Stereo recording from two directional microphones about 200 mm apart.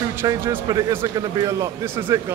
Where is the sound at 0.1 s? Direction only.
10° right (ahead or behind).